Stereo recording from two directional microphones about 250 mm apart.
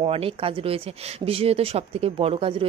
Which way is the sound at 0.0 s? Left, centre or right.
Right.